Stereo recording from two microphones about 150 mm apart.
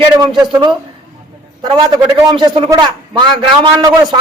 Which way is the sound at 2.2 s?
30° right (ahead or behind).